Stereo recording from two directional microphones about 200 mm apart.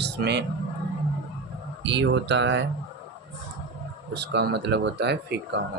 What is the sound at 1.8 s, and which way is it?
Speech, 65° right (ahead or behind).